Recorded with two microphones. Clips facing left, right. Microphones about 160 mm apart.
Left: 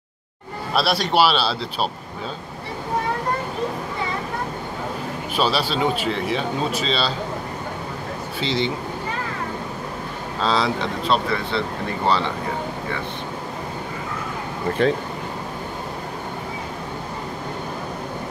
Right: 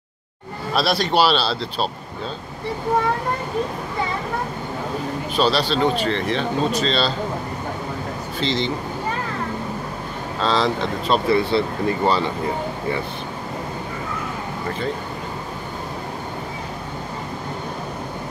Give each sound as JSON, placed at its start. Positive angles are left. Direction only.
{"t": 0.7, "sound": "speech", "side_deg": 5}
{"t": 5.3, "sound": "speech", "side_deg": 10}
{"t": 8.4, "sound": "speech", "side_deg": 5}
{"t": 10.4, "sound": "speech", "side_deg": 5}
{"t": 14.8, "sound": "speech", "side_deg": 90}